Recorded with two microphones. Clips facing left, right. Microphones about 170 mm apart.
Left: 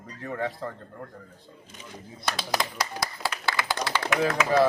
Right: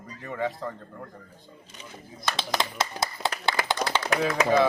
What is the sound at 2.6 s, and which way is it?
Clapping, 25° right (ahead or behind).